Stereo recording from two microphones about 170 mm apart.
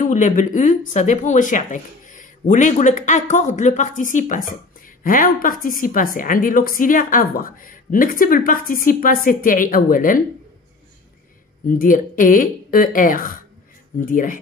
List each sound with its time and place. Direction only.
0.0 s speech: 45° left (ahead or behind)
11.6 s speech: 55° left (ahead or behind)